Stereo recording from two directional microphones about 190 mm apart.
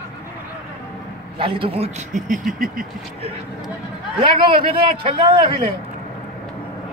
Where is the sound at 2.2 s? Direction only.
45° right (ahead or behind).